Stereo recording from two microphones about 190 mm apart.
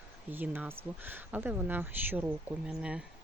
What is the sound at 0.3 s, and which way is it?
Speech, 10° right (ahead or behind).